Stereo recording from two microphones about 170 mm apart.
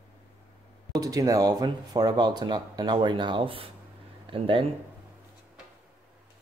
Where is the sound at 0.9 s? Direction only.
20° right (ahead or behind).